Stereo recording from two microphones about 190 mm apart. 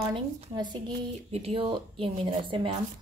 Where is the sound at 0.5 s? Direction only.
25° right (ahead or behind).